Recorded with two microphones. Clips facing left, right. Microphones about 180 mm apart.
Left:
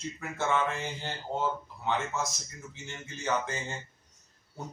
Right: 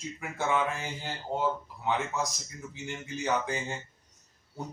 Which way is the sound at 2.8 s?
15° right (ahead or behind).